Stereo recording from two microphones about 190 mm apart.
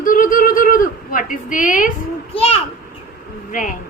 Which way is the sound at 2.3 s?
30° left (ahead or behind).